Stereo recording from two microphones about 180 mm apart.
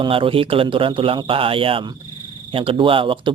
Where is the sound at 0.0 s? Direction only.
30° right (ahead or behind).